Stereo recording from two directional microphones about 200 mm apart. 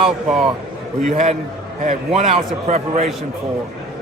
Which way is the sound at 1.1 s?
35° right (ahead or behind).